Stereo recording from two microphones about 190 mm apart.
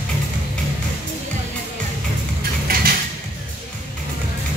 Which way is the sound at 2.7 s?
55° right (ahead or behind).